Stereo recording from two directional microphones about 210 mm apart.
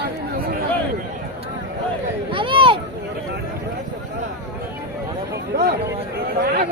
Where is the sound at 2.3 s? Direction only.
25° right (ahead or behind).